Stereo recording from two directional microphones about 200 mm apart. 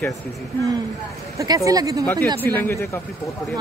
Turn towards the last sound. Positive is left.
turn(degrees=10)  # may be behind; listen again after turning